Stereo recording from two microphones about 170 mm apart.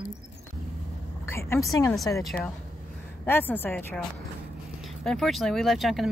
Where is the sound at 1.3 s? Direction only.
15° left (ahead or behind).